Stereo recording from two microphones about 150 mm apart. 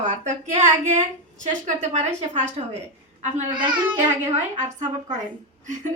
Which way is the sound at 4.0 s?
50° right (ahead or behind).